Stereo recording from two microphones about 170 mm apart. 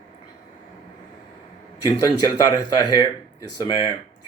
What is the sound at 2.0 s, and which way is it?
Speech, 20° left (ahead or behind).